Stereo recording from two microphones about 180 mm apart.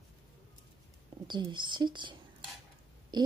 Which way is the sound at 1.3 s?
25° right (ahead or behind).